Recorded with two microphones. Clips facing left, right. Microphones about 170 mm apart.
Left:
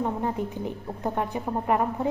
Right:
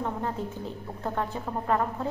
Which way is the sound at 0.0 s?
15° left (ahead or behind).